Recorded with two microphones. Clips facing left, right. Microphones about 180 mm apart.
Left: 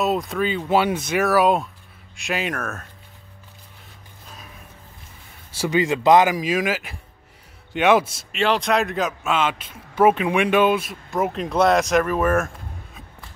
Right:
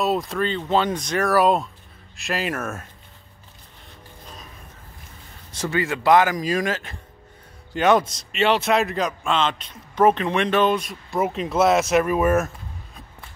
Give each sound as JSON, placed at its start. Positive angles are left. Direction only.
{"t": 0.0, "sound": "a man's voice", "side_deg": 0}
{"t": 5.5, "sound": "speech", "side_deg": 15}
{"t": 6.3, "sound": "a man's voice", "side_deg": 5}